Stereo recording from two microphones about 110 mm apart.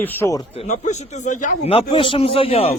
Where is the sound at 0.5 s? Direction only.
75° left (ahead or behind).